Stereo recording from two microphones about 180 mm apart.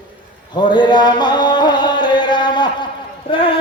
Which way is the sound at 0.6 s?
25° left (ahead or behind).